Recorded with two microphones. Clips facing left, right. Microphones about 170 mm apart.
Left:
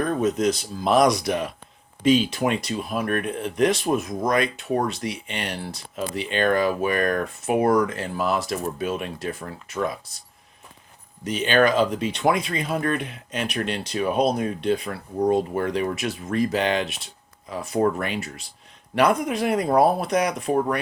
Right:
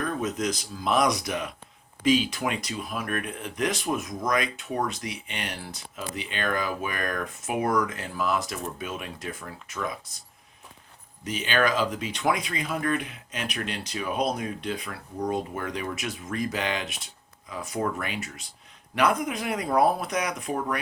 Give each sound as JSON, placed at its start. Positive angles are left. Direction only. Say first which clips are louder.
{"t": 0.0, "sound": "speech", "louder": "left 7 dB", "side_deg": 30}
{"t": 2.5, "sound": "speech", "louder": "left 6 dB", "side_deg": 30}
{"t": 11.3, "sound": "speech", "louder": "left 6 dB", "side_deg": 35}